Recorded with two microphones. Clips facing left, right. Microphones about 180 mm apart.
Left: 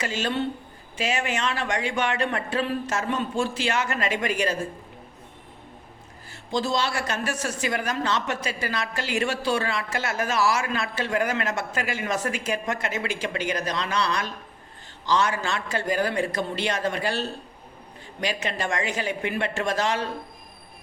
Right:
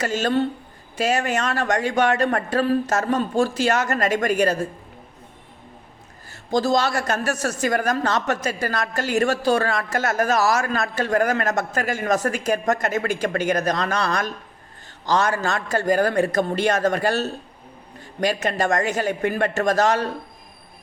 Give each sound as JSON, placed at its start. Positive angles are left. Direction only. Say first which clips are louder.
{"t": 0.0, "sound": "speech", "louder": "right 5 dB", "side_deg": -40}
{"t": 6.3, "sound": "a woman's voice", "louder": "right 6 dB", "side_deg": -40}